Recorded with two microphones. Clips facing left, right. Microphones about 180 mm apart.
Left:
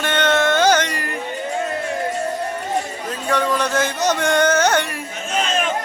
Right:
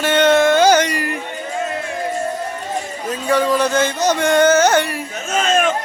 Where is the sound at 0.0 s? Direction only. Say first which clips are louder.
Right 5 dB; 10° right (ahead or behind).